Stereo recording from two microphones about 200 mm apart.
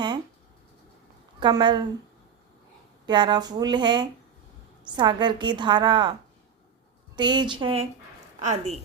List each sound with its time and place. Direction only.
1.4 s a woman's voice: 20° right (ahead or behind)
3.1 s a woman's voice: 20° right (ahead or behind)
7.2 s a woman's voice: 20° right (ahead or behind)